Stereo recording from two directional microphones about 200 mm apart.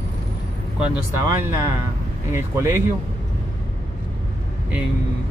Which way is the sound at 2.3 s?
10° right (ahead or behind).